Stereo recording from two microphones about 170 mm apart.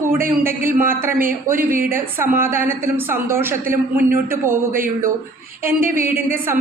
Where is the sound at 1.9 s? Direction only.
15° right (ahead or behind).